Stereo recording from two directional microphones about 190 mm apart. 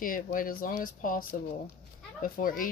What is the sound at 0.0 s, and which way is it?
Speech, 45° left (ahead or behind).